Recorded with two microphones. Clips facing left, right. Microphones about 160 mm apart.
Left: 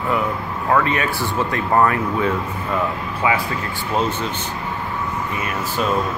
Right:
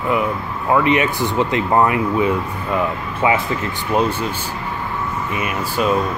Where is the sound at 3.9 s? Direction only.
10° right (ahead or behind).